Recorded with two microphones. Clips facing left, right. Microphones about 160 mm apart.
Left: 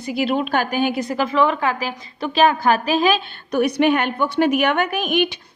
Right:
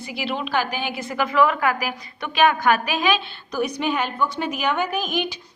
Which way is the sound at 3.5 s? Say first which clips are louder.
Left 7 dB; 65° left (ahead or behind).